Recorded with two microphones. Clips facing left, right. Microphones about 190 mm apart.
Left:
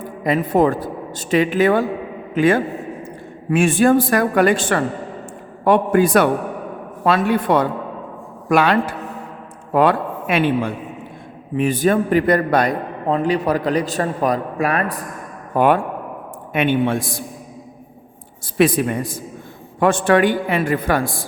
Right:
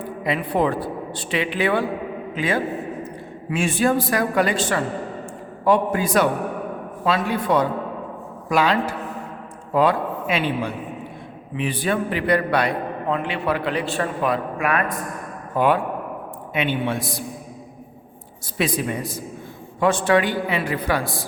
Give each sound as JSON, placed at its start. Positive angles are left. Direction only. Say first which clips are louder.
{"t": 0.0, "sound": "a man's voice", "louder": "left 5 dB", "side_deg": 45}
{"t": 15.5, "sound": "a man's voice", "louder": "left 3 dB", "side_deg": 50}
{"t": 18.5, "sound": "a man's voice", "louder": "left 7 dB", "side_deg": 55}